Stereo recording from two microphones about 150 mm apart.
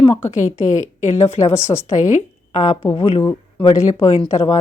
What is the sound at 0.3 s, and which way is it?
Speech, 55° left (ahead or behind).